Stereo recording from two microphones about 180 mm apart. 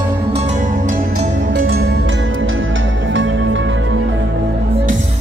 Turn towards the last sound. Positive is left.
turn(degrees=-90)